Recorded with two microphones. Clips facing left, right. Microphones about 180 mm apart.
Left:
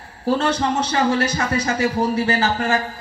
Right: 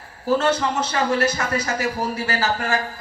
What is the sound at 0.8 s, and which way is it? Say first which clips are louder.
A man's voice: left 2 dB; 30° left (ahead or behind).